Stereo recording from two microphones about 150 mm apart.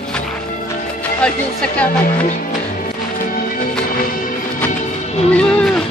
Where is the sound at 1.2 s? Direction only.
10° left (ahead or behind).